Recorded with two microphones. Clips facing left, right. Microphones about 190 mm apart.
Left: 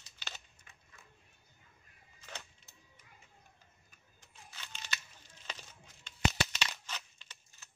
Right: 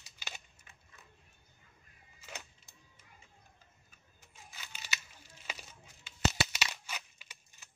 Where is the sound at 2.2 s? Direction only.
10° right (ahead or behind).